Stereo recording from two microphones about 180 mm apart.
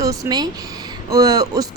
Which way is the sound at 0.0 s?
20° right (ahead or behind).